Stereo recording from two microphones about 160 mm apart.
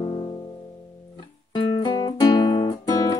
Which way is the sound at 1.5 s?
25° left (ahead or behind).